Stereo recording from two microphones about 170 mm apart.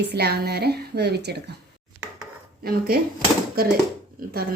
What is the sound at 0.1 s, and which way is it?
Speech, 70° right (ahead or behind).